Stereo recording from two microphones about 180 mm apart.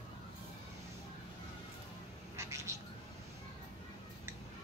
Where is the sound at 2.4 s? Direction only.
15° right (ahead or behind).